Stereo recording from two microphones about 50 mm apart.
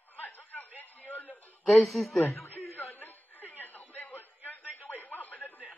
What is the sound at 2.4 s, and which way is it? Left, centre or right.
Chuckle, left.